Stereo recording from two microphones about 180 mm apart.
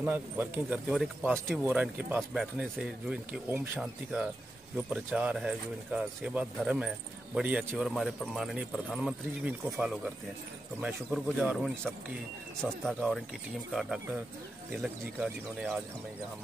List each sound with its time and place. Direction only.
0.0 s a man's voice: 10° right (ahead or behind)
3.8 s a man's voice: centre (ahead or behind)